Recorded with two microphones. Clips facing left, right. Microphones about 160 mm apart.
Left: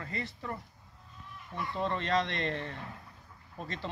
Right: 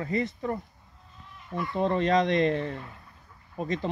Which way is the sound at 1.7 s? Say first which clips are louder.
Right 8 dB; 50° right (ahead or behind).